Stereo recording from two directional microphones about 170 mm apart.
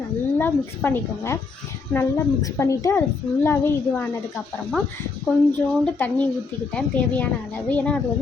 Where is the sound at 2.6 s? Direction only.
15° left (ahead or behind).